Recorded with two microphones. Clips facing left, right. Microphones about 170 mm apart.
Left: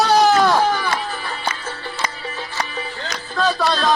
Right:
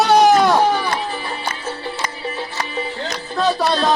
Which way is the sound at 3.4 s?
15° right (ahead or behind).